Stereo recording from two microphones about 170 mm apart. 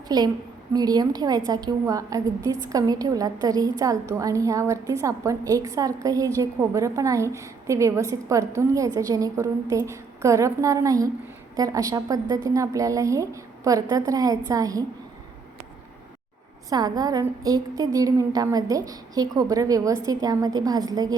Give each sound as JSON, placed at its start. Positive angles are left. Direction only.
{"t": 0.1, "sound": "a woman's voice", "side_deg": -20}
{"t": 16.6, "sound": "a woman's voice", "side_deg": -25}